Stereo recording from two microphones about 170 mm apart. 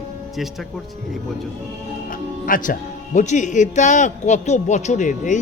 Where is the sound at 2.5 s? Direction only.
55° left (ahead or behind).